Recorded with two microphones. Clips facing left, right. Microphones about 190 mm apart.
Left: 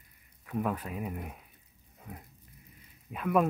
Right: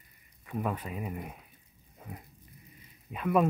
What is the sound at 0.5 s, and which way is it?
Speech, centre (ahead or behind).